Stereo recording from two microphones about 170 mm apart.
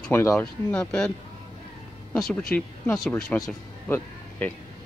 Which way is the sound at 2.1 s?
5° left (ahead or behind).